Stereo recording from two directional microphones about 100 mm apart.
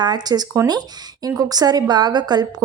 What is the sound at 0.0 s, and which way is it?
A woman's voice, 45° right (ahead or behind).